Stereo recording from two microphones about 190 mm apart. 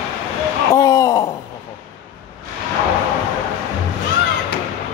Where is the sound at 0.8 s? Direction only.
15° left (ahead or behind).